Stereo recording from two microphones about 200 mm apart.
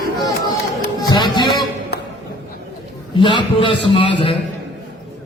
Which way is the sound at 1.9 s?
55° left (ahead or behind).